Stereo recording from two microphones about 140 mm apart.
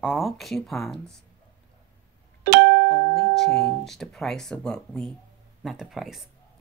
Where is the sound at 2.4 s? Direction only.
90° right.